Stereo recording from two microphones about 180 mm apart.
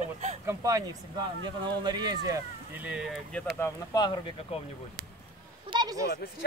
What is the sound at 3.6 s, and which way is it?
Speech, 20° left (ahead or behind).